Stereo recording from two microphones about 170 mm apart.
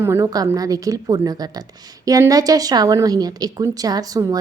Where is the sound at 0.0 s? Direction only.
15° right (ahead or behind).